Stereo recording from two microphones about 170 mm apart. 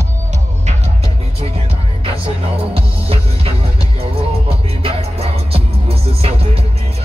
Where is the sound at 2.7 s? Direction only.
35° right (ahead or behind).